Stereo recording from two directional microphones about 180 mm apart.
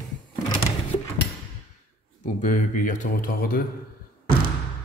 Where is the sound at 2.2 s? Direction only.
45° left (ahead or behind).